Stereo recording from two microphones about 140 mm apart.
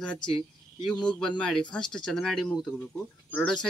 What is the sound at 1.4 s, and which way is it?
Speech, 5° left (ahead or behind).